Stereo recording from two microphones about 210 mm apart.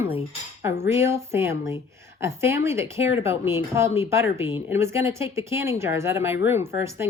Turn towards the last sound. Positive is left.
turn(degrees=-10)  # may be behind; listen again after turning